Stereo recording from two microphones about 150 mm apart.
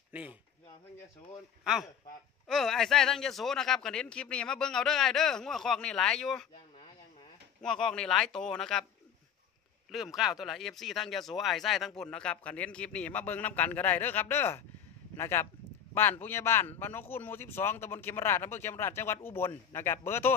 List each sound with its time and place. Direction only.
0.1 s speech: 10° right (ahead or behind)
1.6 s speech: 5° right (ahead or behind)
7.6 s speech: 5° left (ahead or behind)
9.8 s speech: centre (ahead or behind); by 20.3 s 15° left (ahead or behind)